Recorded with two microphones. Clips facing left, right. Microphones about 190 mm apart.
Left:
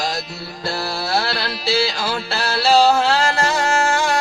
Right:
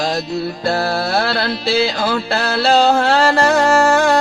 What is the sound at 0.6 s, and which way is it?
Music, 55° right (ahead or behind).